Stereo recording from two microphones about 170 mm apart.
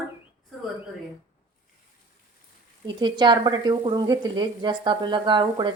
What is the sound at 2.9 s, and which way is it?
Speech, 25° right (ahead or behind).